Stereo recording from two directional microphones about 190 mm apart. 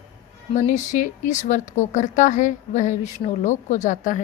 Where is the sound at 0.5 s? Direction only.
40° left (ahead or behind).